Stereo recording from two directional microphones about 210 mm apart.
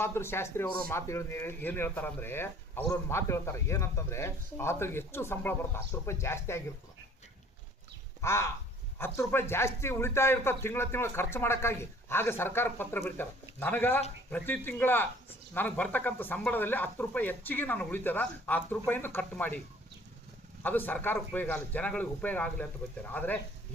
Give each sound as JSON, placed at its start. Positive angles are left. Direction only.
{"t": 0.0, "sound": "speech", "side_deg": 10}
{"t": 8.2, "sound": "speech", "side_deg": 10}